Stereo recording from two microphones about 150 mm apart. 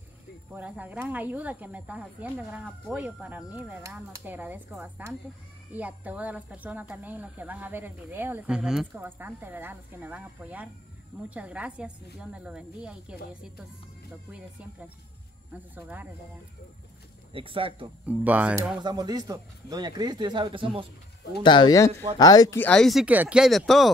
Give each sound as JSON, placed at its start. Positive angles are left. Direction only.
{"t": 0.5, "sound": "speech", "side_deg": -10}
{"t": 15.5, "sound": "speech", "side_deg": -10}
{"t": 17.3, "sound": "speech", "side_deg": -35}
{"t": 18.0, "sound": "speech", "side_deg": -10}
{"t": 18.8, "sound": "speech", "side_deg": -25}
{"t": 21.4, "sound": "speech", "side_deg": 30}
{"t": 22.6, "sound": "speech", "side_deg": 5}
{"t": 23.0, "sound": "speech", "side_deg": -10}